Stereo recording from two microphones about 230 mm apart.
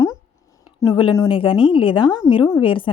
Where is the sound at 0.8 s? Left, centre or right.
Centre.